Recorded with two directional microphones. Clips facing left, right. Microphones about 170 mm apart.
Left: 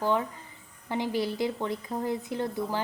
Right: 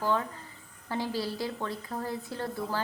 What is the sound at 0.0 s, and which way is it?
A woman's voice, 15° left (ahead or behind).